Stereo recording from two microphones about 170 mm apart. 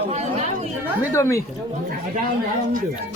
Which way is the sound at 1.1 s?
15° left (ahead or behind).